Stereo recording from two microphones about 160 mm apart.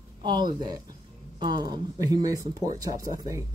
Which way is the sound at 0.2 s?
30° right (ahead or behind).